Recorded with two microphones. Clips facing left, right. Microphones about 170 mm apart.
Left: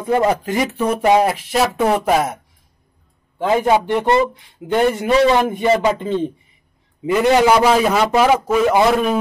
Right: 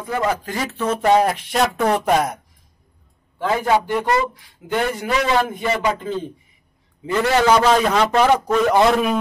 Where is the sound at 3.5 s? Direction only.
25° left (ahead or behind).